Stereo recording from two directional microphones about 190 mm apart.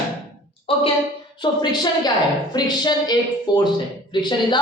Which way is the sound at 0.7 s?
30° left (ahead or behind).